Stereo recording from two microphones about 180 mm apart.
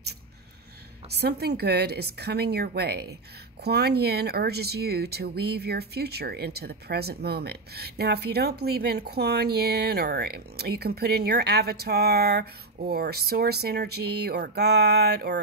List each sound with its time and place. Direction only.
1.1 s speech: 65° right (ahead or behind)